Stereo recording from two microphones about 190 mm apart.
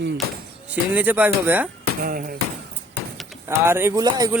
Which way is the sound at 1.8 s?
50° right (ahead or behind).